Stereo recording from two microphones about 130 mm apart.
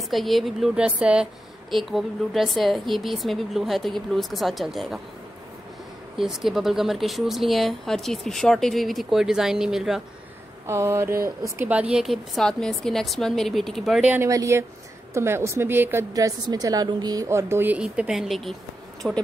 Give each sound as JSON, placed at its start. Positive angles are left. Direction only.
{"t": 0.1, "sound": "a woman's voice", "side_deg": 0}
{"t": 6.1, "sound": "a woman's voice", "side_deg": 0}
{"t": 10.7, "sound": "a woman's voice", "side_deg": -20}
{"t": 14.1, "sound": "a woman's voice", "side_deg": -20}
{"t": 16.1, "sound": "a woman's voice", "side_deg": -30}